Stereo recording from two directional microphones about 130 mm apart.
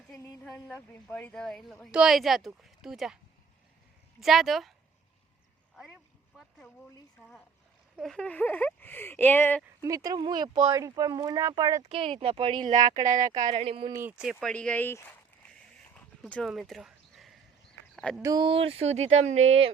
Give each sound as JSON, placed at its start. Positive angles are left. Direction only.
{"t": 0.4, "sound": "speech", "side_deg": 10}
{"t": 4.2, "sound": "speech", "side_deg": 0}
{"t": 5.7, "sound": "a sound", "side_deg": 0}
{"t": 7.2, "sound": "speech", "side_deg": 0}
{"t": 9.8, "sound": "speech", "side_deg": -25}
{"t": 11.9, "sound": "speech", "side_deg": -45}
{"t": 13.2, "sound": "speech", "side_deg": -25}
{"t": 13.5, "sound": "speech", "side_deg": -45}
{"t": 13.9, "sound": "speech", "side_deg": -15}
{"t": 14.3, "sound": "speech", "side_deg": 10}
{"t": 16.0, "sound": "horse", "side_deg": 5}
{"t": 17.9, "sound": "a sound", "side_deg": 5}
{"t": 18.2, "sound": "speech", "side_deg": -25}
{"t": 18.4, "sound": "speech", "side_deg": -45}